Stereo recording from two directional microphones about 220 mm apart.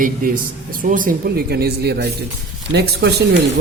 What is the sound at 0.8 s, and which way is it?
Speech, 40° right (ahead or behind).